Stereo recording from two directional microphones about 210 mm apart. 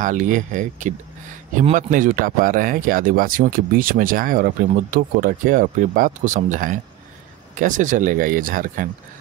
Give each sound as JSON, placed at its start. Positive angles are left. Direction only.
{"t": 0.0, "sound": "speech", "side_deg": -35}